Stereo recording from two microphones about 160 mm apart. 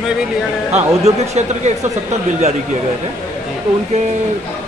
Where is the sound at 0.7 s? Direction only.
45° right (ahead or behind).